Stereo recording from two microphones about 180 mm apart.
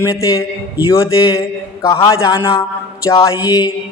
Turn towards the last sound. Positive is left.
turn(degrees=20)  # may be behind; listen again after turning